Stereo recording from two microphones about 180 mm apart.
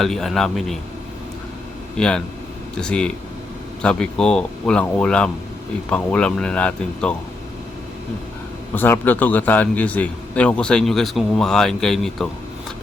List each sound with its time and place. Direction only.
0.0 s a man's voice: centre (ahead or behind)
2.0 s a man's voice: 5° left (ahead or behind)
8.7 s a man's voice: 10° left (ahead or behind)